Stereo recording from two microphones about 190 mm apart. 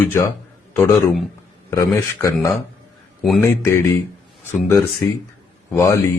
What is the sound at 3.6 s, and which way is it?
Speech, 15° left (ahead or behind).